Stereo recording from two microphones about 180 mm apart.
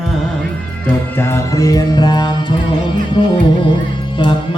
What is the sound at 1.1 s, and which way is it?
Mantra, 15° left (ahead or behind).